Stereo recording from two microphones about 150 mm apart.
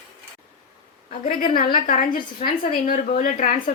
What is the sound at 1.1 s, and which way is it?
A woman's voice, 70° left (ahead or behind).